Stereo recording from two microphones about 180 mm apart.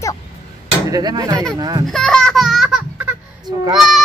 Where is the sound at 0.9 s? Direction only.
20° right (ahead or behind).